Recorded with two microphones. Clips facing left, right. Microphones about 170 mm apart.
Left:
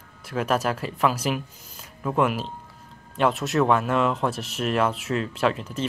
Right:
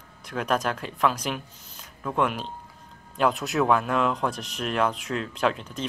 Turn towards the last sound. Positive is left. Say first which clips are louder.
# left 2 dB
turn(degrees=5)  # may be behind; listen again after turning